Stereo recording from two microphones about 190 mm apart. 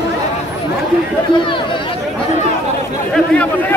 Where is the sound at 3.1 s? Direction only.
5° left (ahead or behind).